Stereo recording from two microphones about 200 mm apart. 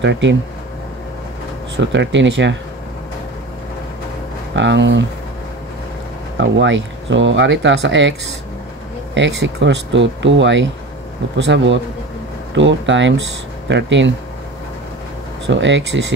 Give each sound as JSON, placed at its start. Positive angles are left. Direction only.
{"t": 0.0, "sound": "speech", "side_deg": -65}
{"t": 1.8, "sound": "speech", "side_deg": -65}
{"t": 4.6, "sound": "speech", "side_deg": -65}
{"t": 6.5, "sound": "speech", "side_deg": -65}
{"t": 15.4, "sound": "speech", "side_deg": -65}